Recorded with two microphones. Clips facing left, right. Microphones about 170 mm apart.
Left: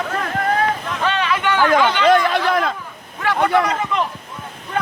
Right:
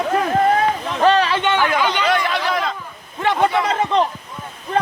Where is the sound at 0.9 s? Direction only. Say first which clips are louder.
Right 5 dB; 35° right (ahead or behind).